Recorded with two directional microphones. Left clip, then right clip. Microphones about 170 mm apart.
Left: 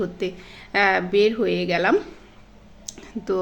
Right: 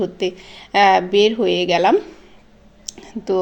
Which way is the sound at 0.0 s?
20° right (ahead or behind).